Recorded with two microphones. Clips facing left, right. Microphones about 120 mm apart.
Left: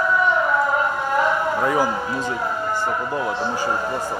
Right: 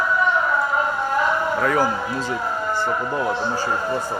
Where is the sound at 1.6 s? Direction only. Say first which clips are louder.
Right 1 dB; 15° left (ahead or behind).